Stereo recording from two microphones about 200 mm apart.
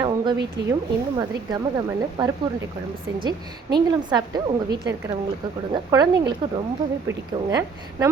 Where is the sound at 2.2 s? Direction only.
20° right (ahead or behind).